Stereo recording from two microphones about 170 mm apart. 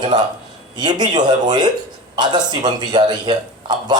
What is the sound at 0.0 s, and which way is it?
A man's voice, 25° right (ahead or behind).